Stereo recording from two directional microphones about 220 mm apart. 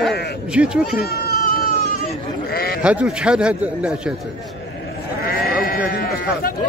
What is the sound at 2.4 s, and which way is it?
Sheep, 45° left (ahead or behind).